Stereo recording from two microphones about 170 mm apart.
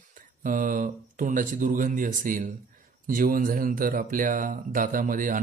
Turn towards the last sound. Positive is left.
turn(degrees=-50)  # may be behind; listen again after turning